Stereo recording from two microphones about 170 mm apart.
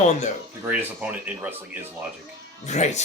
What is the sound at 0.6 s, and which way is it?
Speech, 10° right (ahead or behind).